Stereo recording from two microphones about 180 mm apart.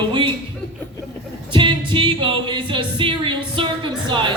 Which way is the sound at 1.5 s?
25° right (ahead or behind).